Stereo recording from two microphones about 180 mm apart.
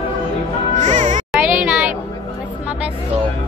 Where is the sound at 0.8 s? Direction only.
45° right (ahead or behind).